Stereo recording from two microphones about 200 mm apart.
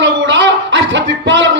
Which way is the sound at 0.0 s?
65° right (ahead or behind).